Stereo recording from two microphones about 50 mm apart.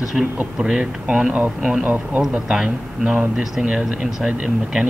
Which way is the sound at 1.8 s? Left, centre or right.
Right.